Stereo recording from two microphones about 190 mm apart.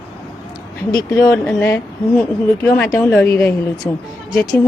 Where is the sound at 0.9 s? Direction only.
15° left (ahead or behind).